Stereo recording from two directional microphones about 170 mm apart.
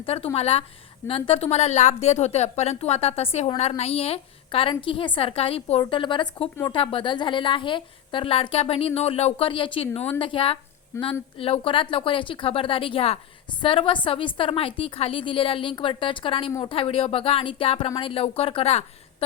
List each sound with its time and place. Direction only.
0.0 s a woman's voice: 35° left (ahead or behind)
10.9 s speech: 15° left (ahead or behind)
11.3 s a woman's voice: 35° left (ahead or behind)